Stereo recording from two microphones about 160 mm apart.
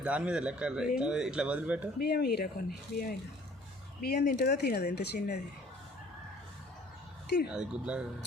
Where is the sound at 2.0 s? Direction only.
80° left.